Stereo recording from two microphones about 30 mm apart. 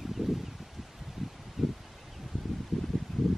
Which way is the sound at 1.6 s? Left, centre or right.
Centre.